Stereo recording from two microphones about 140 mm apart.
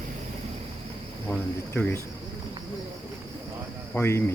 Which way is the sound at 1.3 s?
15° left (ahead or behind).